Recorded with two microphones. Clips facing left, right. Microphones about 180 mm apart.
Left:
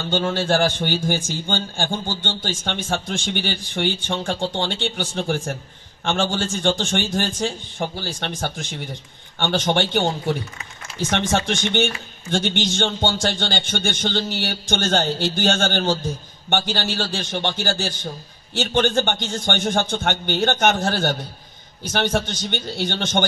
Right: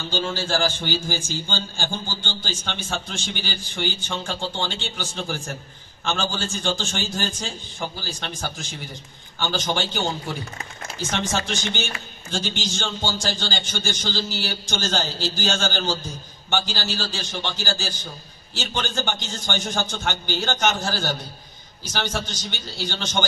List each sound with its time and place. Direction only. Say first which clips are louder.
0.1 s a man's voice: left 5 dB; 60° left (ahead or behind)
6.0 s a man's voice: left 4 dB; 65° left (ahead or behind)